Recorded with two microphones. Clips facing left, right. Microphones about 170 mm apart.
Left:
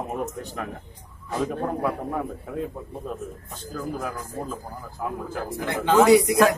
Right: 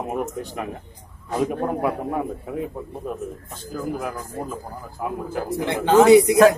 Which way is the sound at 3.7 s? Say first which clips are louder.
Right 3 dB; 5° right (ahead or behind).